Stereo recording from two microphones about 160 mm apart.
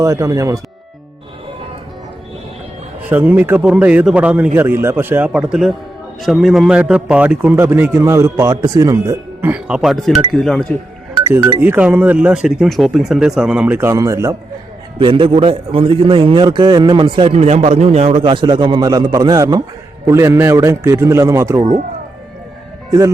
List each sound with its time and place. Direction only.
0.0 s a man's voice: 20° right (ahead or behind)
3.1 s a man's voice: 10° right (ahead or behind)
11.6 s a man's voice: 15° right (ahead or behind)
14.9 s a man's voice: 30° right (ahead or behind)
22.9 s speech: 20° right (ahead or behind)